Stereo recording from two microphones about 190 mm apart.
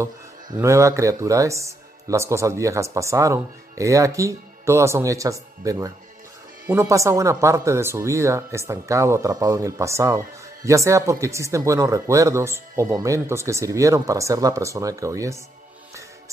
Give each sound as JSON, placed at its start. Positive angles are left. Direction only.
{"t": 0.6, "sound": "speech", "side_deg": -15}